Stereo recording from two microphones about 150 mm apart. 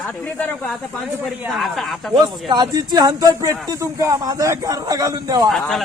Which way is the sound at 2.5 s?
30° right (ahead or behind).